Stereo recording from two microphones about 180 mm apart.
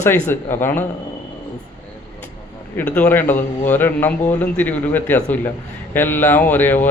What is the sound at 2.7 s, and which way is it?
A man's voice, 5° left (ahead or behind).